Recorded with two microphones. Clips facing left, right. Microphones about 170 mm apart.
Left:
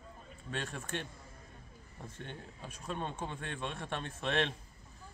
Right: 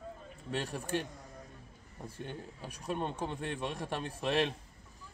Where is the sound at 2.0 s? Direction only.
10° right (ahead or behind).